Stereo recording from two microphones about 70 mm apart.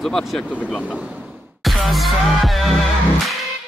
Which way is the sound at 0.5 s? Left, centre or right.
Centre.